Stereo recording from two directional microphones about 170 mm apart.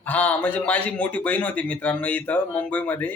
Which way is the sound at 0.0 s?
10° left (ahead or behind).